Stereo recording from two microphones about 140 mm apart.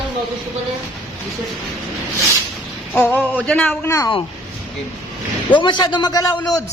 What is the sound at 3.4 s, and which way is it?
Speech, 10° left (ahead or behind).